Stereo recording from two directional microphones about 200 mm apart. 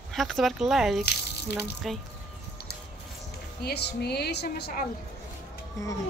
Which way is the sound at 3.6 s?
55° left (ahead or behind).